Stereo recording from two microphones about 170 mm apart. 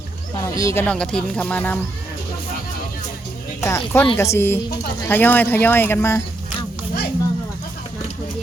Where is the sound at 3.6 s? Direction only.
15° left (ahead or behind).